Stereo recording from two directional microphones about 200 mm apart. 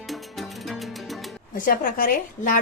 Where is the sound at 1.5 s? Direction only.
40° left (ahead or behind).